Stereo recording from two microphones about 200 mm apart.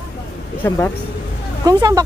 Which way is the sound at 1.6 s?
20° right (ahead or behind).